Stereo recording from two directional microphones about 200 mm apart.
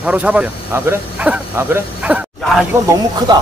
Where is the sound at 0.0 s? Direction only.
5° right (ahead or behind).